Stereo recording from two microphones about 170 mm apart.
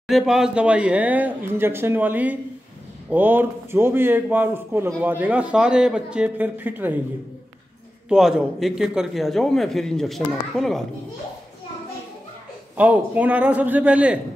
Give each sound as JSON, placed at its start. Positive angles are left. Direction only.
{"t": 0.1, "sound": "a man's voice", "side_deg": -5}
{"t": 8.1, "sound": "a man's voice", "side_deg": 0}
{"t": 12.7, "sound": "a man's voice", "side_deg": -10}